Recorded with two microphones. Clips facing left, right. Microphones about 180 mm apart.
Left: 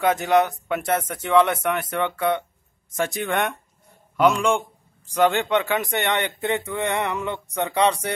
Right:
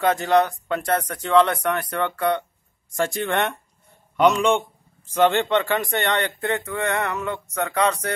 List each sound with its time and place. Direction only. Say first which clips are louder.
0.0 s a man's voice: even; centre (ahead or behind)
1.6 s speech: even; 20° left (ahead or behind)
3.2 s a man's voice: right 1 dB; centre (ahead or behind)
5.9 s speech: right 1 dB; 20° left (ahead or behind)